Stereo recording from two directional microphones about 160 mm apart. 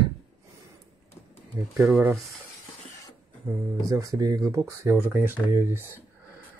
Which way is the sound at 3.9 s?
20° right (ahead or behind).